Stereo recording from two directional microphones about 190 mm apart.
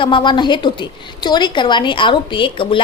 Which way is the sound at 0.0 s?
25° left (ahead or behind).